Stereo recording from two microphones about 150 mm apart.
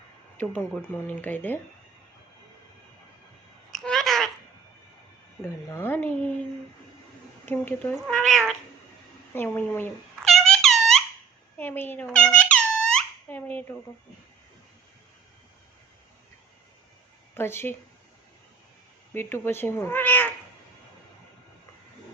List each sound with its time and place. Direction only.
0.4 s speech: 10° left (ahead or behind)
3.7 s a sound: centre (ahead or behind)
5.4 s speech: 15° left (ahead or behind)
7.4 s speech: 10° left (ahead or behind)
9.3 s speech: 15° left (ahead or behind)
10.2 s a sound: centre (ahead or behind)
11.5 s speech: 15° left (ahead or behind)
13.0 s a sound: 10° left (ahead or behind)
17.3 s speech: 15° left (ahead or behind)
19.1 s speech: 15° left (ahead or behind)